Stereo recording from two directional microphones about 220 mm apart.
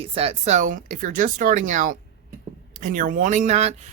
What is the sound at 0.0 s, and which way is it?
Speech, 25° right (ahead or behind).